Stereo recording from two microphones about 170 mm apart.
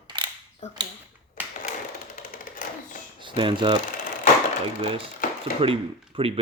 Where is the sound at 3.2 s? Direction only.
30° right (ahead or behind).